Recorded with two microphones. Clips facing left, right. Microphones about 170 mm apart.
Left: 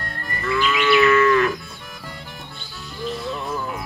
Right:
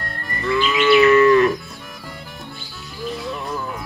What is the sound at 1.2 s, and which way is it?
Livestock, 35° right (ahead or behind).